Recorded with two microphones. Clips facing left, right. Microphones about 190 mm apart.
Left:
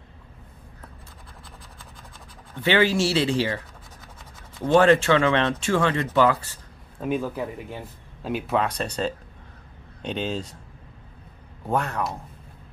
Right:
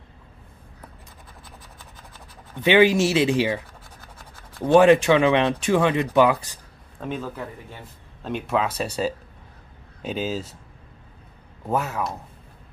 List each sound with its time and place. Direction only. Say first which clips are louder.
2.5 s speech: right 4 dB; 15° right (ahead or behind)
4.6 s speech: right 3 dB; 15° right (ahead or behind)
7.0 s speech: left 4 dB; 10° left (ahead or behind); by 10.5 s 5° right (ahead or behind)
11.6 s speech: even; 5° right (ahead or behind)